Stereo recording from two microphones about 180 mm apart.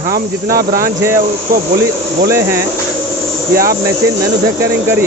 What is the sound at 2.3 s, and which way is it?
Speech, 15° right (ahead or behind).